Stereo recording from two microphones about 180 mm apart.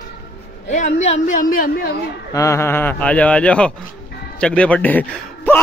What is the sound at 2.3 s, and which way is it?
Speech, 15° left (ahead or behind).